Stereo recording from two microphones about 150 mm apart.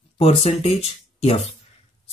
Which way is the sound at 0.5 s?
45° left (ahead or behind).